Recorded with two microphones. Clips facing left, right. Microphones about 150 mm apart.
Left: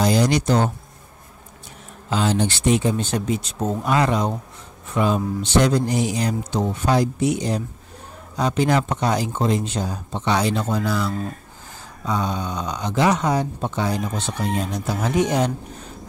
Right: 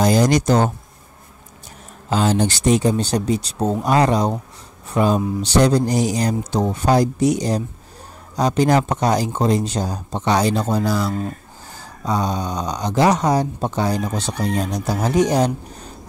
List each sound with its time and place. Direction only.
0.0 s speech: 45° right (ahead or behind)
2.0 s speech: 40° right (ahead or behind)